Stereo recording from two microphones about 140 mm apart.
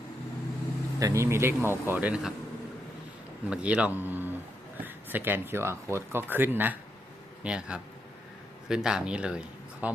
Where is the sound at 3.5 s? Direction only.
10° right (ahead or behind).